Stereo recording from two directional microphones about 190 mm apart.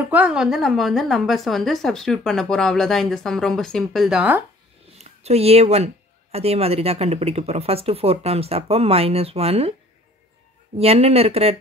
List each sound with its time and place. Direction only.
0.1 s a woman's voice: 5° right (ahead or behind)
4.9 s speech: 35° right (ahead or behind)
10.8 s speech: 30° right (ahead or behind)